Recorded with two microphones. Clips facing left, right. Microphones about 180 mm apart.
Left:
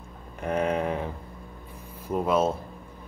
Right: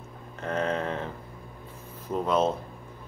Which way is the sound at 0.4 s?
10° left (ahead or behind).